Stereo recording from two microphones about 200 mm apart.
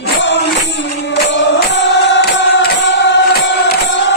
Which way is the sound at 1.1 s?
65° left (ahead or behind).